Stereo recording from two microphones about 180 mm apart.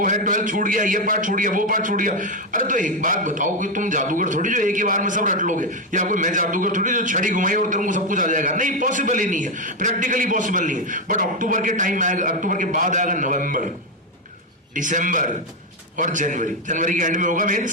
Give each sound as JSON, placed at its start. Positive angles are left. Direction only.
{"t": 0.0, "sound": "a man's voice", "side_deg": -45}
{"t": 14.8, "sound": "a man's voice", "side_deg": -45}